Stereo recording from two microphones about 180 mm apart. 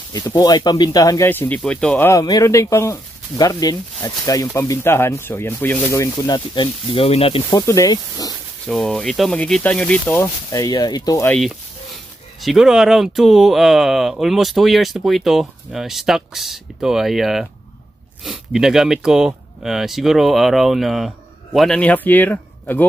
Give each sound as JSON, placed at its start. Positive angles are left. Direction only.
{"t": 0.1, "sound": "speech", "side_deg": 20}
{"t": 2.0, "sound": "speech", "side_deg": 20}
{"t": 7.4, "sound": "speech", "side_deg": 15}
{"t": 8.6, "sound": "speech", "side_deg": 0}
{"t": 12.4, "sound": "speech", "side_deg": 0}